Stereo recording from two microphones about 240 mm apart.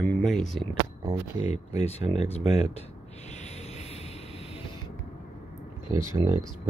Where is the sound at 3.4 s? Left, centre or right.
Left.